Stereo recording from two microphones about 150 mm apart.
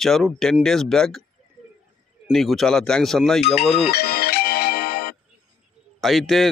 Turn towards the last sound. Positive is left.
turn(degrees=0)  # may be behind; listen again after turning